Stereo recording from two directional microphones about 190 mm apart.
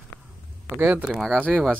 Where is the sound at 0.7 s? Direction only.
10° right (ahead or behind).